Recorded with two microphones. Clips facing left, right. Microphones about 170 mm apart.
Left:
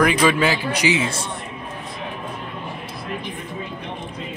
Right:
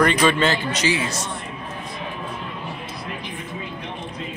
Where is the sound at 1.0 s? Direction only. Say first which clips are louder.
Left 2 dB; 30° left (ahead or behind).